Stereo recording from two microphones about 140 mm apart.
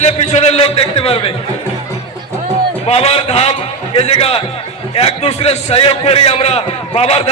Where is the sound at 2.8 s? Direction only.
45° left (ahead or behind).